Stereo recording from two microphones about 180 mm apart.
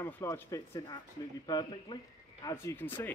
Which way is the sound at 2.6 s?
10° left (ahead or behind).